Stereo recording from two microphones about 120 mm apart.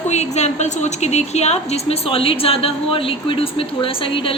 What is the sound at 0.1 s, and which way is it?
Speech, 70° left (ahead or behind).